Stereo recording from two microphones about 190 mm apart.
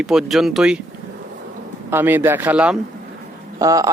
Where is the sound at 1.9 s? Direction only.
10° right (ahead or behind).